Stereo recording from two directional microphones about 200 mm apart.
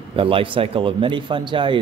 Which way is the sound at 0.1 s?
25° right (ahead or behind).